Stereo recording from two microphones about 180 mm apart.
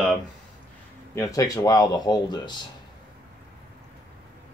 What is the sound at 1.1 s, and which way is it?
Speech, 20° left (ahead or behind).